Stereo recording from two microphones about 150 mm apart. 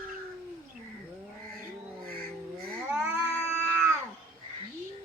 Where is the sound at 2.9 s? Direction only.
5° right (ahead or behind).